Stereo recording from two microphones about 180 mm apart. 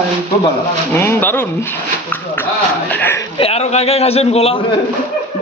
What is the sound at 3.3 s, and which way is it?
A man's voice, 35° left (ahead or behind).